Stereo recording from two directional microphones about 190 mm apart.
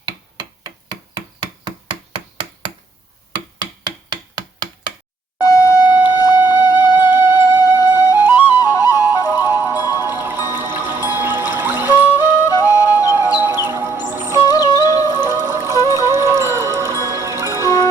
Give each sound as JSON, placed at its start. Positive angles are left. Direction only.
{"t": 0.3, "sound": "a sound", "side_deg": -20}
{"t": 4.1, "sound": "rub", "side_deg": -20}
{"t": 5.4, "sound": "music", "side_deg": 15}
{"t": 6.9, "sound": "music", "side_deg": -10}
{"t": 7.8, "sound": "flute", "side_deg": 20}
{"t": 8.2, "sound": "flute", "side_deg": -10}
{"t": 8.5, "sound": "flute", "side_deg": 20}
{"t": 9.7, "sound": "music", "side_deg": -10}
{"t": 12.1, "sound": "music", "side_deg": 15}
{"t": 13.1, "sound": "music", "side_deg": -10}
{"t": 14.4, "sound": "music", "side_deg": 20}
{"t": 15.2, "sound": "music", "side_deg": -10}